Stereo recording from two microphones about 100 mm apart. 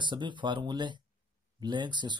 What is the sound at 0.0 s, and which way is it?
Speech, 50° right (ahead or behind).